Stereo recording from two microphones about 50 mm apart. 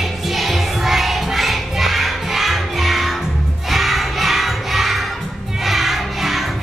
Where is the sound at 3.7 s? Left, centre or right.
Centre.